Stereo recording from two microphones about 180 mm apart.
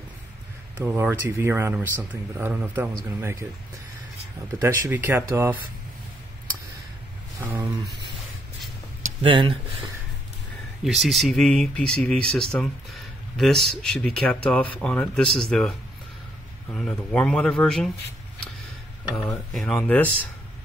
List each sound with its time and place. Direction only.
0.8 s speech: 10° right (ahead or behind)
4.6 s speech: 15° right (ahead or behind)
7.3 s a sound: 10° right (ahead or behind)
9.2 s speech: 30° right (ahead or behind)
10.8 s speech: centre (ahead or behind)
16.7 s speech: 5° left (ahead or behind)
19.5 s speech: 5° left (ahead or behind)